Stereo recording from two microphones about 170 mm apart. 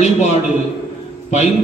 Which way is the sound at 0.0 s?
40° left (ahead or behind).